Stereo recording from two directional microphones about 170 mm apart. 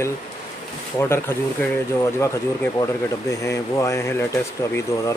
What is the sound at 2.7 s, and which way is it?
Speech, 20° left (ahead or behind).